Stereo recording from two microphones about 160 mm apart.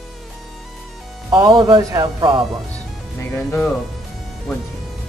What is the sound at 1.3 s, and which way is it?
A man's voice, 30° right (ahead or behind).